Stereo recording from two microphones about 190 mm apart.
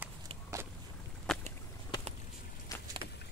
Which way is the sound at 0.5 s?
15° right (ahead or behind).